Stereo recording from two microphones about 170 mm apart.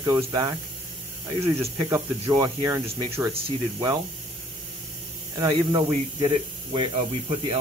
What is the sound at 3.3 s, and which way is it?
Speech, 35° right (ahead or behind).